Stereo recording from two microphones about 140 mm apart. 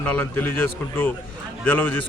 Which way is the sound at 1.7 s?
15° left (ahead or behind).